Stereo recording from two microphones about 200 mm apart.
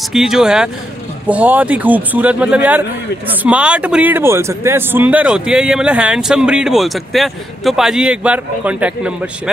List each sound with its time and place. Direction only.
0.1 s speech: centre (ahead or behind)